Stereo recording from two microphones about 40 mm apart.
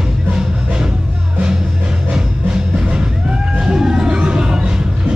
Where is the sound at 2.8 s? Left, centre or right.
Right.